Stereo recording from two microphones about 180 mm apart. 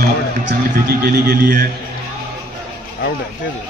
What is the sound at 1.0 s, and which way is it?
Speech, 55° right (ahead or behind).